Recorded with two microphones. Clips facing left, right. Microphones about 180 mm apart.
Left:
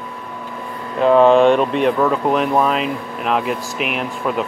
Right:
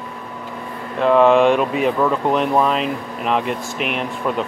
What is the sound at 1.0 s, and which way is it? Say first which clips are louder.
Speech: left 2 dB; centre (ahead or behind).